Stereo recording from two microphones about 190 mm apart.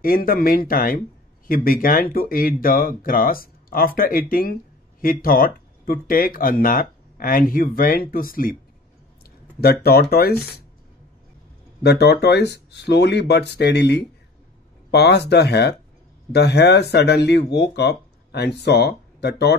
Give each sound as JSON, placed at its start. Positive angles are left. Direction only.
{"t": 0.0, "sound": "speech", "side_deg": 50}
{"t": 10.1, "sound": "speech", "side_deg": 55}
{"t": 11.8, "sound": "speech", "side_deg": 60}